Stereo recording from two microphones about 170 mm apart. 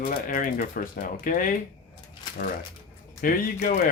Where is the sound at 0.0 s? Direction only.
55° left (ahead or behind).